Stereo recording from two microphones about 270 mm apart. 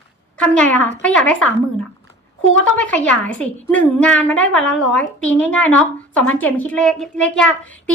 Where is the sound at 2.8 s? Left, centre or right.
Centre.